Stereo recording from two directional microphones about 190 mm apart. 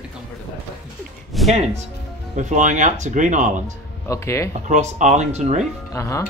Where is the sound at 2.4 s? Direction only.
40° right (ahead or behind).